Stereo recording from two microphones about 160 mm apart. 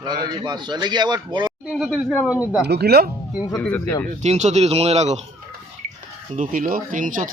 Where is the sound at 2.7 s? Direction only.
85° right.